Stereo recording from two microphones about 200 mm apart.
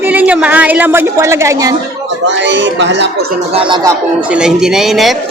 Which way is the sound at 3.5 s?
25° right (ahead or behind).